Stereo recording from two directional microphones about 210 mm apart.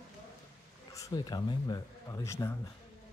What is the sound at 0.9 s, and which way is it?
Speech, 15° left (ahead or behind).